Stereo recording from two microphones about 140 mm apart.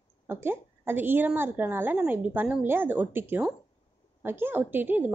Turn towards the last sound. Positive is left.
turn(degrees=-15)  # may be behind; listen again after turning